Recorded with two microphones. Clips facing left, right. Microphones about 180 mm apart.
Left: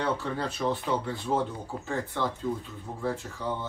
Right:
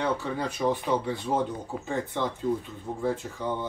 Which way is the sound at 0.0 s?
10° right (ahead or behind).